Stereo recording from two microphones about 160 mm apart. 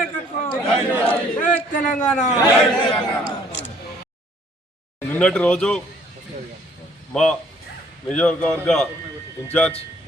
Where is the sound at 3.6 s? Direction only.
90° left.